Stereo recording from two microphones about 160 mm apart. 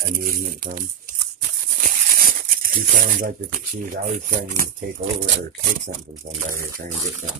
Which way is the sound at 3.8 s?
55° right (ahead or behind).